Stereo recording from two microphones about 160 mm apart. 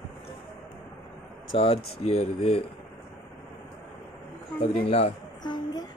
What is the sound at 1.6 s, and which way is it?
Speech, 40° left (ahead or behind).